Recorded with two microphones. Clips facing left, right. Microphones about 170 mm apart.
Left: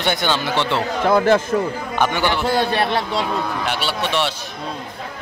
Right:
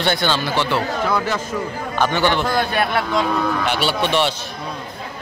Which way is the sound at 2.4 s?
30° left (ahead or behind).